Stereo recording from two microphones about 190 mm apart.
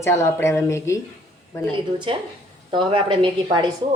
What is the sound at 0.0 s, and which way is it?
Speech, 15° left (ahead or behind).